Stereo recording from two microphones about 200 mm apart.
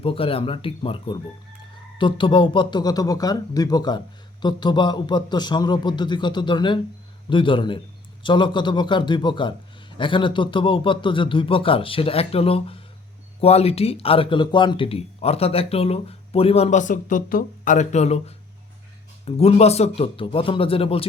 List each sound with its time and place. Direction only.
0.0 s speech: 25° left (ahead or behind)